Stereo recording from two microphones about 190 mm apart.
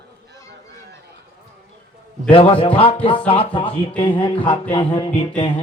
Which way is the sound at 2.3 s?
25° left (ahead or behind).